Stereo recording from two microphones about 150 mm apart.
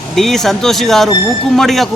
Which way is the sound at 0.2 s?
Centre (ahead or behind).